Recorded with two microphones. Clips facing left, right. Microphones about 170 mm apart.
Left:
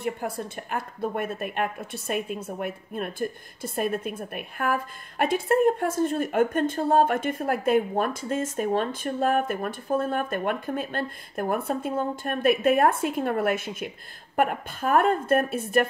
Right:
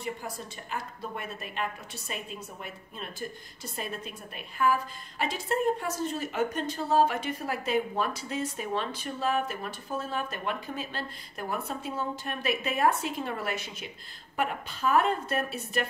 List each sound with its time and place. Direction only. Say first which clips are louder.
0.0 s a woman's voice: left 7 dB; 55° left (ahead or behind)